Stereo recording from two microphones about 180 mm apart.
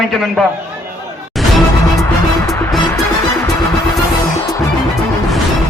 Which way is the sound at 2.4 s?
15° left (ahead or behind).